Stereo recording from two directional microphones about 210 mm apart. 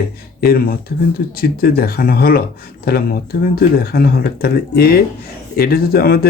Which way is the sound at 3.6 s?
45° left (ahead or behind).